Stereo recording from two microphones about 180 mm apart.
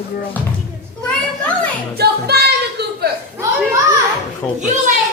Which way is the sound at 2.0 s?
60° right (ahead or behind).